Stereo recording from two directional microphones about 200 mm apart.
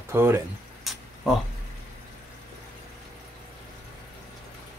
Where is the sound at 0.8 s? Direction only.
Centre (ahead or behind).